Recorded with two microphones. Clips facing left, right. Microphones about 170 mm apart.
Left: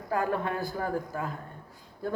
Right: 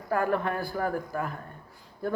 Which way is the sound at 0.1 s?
15° left (ahead or behind).